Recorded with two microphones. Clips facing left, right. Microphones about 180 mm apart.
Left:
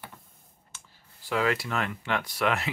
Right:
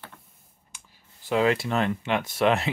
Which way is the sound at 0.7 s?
15° right (ahead or behind).